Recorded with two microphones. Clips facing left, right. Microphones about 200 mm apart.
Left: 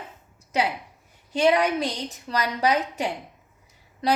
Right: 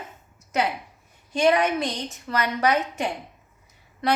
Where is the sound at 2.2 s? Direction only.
35° left (ahead or behind).